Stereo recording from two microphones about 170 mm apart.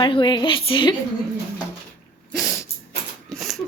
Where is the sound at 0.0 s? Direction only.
25° left (ahead or behind).